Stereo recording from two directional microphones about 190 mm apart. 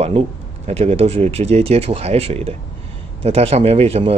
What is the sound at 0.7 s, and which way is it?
Speech, 35° right (ahead or behind).